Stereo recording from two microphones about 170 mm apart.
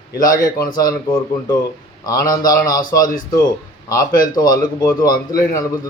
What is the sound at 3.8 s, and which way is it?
A man's voice, 20° left (ahead or behind).